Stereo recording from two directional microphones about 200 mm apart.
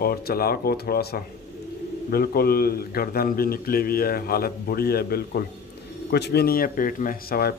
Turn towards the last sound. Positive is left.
turn(degrees=50)  # may be behind; listen again after turning